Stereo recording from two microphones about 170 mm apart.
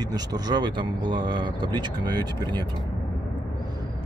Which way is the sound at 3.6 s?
25° right (ahead or behind).